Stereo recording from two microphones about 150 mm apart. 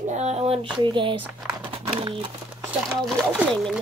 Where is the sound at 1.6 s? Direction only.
35° right (ahead or behind).